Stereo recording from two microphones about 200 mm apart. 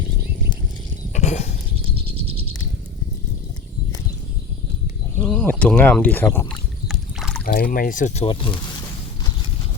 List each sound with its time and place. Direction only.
1.1 s horse: 35° left (ahead or behind)
2.0 s a sound: 30° right (ahead or behind)
5.1 s speech: 5° left (ahead or behind)
6.8 s rowboat: centre (ahead or behind)
7.4 s speech: 45° left (ahead or behind); by 8.5 s 25° left (ahead or behind)